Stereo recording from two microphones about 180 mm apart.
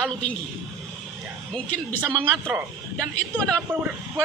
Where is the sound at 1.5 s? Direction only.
10° left (ahead or behind).